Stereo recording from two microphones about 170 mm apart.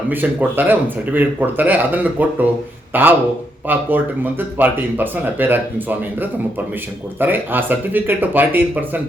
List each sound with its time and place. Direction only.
0.1 s speech: 10° right (ahead or behind)
7.2 s speech: 10° right (ahead or behind)